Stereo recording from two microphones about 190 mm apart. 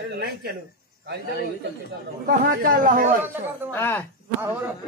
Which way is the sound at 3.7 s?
10° left (ahead or behind).